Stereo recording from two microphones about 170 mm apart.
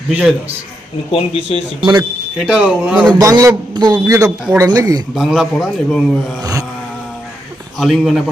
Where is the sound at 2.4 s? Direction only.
5° right (ahead or behind).